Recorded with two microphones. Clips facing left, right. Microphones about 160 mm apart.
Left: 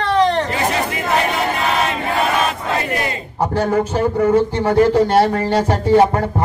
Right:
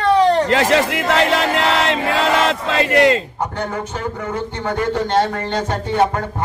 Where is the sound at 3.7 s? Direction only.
30° left (ahead or behind).